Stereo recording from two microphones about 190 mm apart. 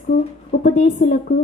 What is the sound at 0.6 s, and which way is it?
Speech, 45° left (ahead or behind).